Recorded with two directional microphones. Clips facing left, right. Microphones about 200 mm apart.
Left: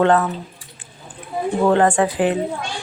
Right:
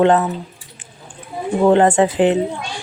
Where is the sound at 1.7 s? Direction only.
20° right (ahead or behind).